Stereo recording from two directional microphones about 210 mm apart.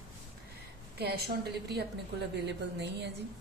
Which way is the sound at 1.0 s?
50° right (ahead or behind).